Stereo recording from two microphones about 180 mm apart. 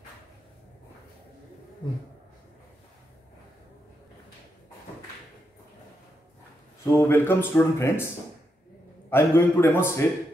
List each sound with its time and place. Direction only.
1.8 s speech: 25° left (ahead or behind)
6.9 s speech: 15° left (ahead or behind)
9.1 s speech: 10° left (ahead or behind)